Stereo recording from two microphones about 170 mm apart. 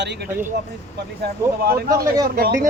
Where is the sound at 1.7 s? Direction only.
20° right (ahead or behind).